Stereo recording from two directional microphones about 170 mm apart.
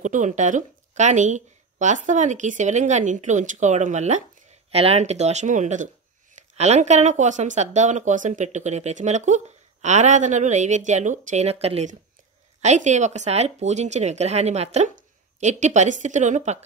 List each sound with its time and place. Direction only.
0.0 s speech: 45° right (ahead or behind)